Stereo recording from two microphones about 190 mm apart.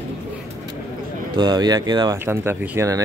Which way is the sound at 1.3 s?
20° right (ahead or behind).